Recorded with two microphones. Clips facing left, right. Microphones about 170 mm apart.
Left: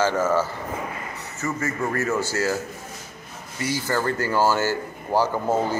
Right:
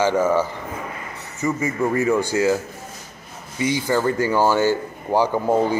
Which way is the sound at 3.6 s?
15° right (ahead or behind).